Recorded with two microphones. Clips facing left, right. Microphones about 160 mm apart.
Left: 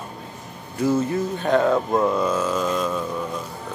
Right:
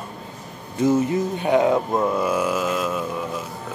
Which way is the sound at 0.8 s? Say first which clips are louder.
Right 2 dB; 20° right (ahead or behind).